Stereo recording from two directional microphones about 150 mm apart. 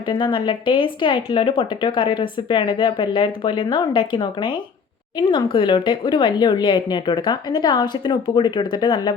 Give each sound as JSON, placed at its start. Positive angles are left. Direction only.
{"t": 0.1, "sound": "a woman's voice", "side_deg": 35}